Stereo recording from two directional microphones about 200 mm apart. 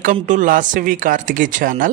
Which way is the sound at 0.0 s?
40° right (ahead or behind).